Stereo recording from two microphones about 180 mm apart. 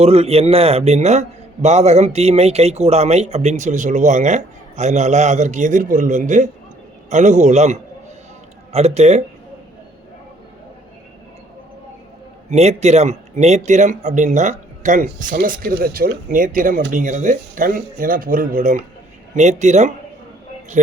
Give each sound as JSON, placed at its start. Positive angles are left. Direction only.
{"t": 0.0, "sound": "speech", "side_deg": -35}
{"t": 12.5, "sound": "a man's voice", "side_deg": -35}